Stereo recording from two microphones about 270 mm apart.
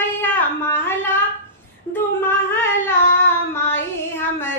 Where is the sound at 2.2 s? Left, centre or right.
Centre.